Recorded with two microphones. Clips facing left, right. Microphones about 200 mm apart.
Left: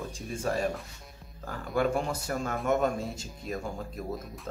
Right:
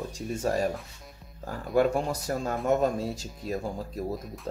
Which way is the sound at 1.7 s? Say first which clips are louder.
Right 4 dB; 35° right (ahead or behind).